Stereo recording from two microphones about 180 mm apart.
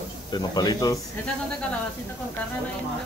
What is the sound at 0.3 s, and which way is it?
Speech, 20° left (ahead or behind).